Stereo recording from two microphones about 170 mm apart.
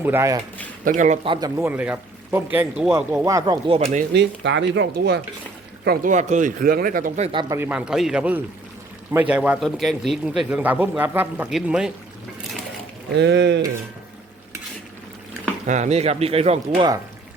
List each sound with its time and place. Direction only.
0.0 s a man's voice: 15° right (ahead or behind)
0.9 s a man's voice: 45° right (ahead or behind)
1.2 s a man's voice: 25° right (ahead or behind)
3.8 s a man's voice: 45° right (ahead or behind)
4.1 s speech: 90° right
5.8 s speech: 60° right (ahead or behind)
7.2 s speech: 30° right (ahead or behind)
7.6 s a man's voice: 10° right (ahead or behind)
13.1 s speech: 90° right
15.6 s speech: 45° right (ahead or behind)